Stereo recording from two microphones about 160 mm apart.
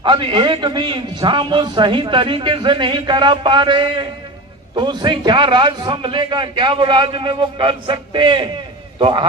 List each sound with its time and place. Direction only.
0.0 s a man's voice: 30° right (ahead or behind)